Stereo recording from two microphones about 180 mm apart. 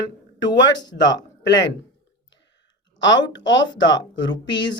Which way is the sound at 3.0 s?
90° left.